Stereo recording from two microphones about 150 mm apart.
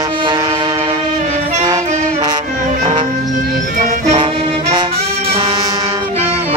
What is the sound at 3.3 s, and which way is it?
Music, 60° right (ahead or behind).